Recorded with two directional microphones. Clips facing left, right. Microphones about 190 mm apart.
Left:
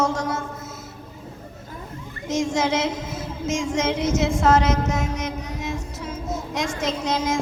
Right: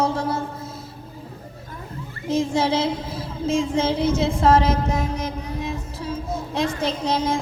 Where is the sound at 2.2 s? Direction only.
30° right (ahead or behind).